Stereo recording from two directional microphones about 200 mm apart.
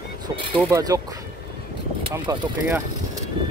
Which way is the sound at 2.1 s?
15° right (ahead or behind).